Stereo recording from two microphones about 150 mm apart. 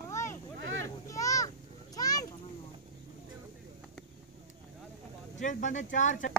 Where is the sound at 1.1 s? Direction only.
20° left (ahead or behind).